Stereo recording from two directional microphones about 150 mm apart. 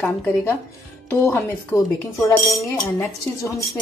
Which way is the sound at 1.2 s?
15° left (ahead or behind).